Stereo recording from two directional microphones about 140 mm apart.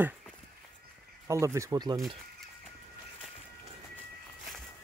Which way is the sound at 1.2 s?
20° right (ahead or behind).